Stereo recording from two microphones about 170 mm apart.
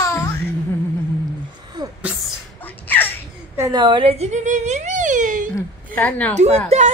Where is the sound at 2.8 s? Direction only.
10° left (ahead or behind).